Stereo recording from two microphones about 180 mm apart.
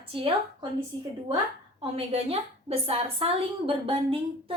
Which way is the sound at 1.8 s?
35° right (ahead or behind).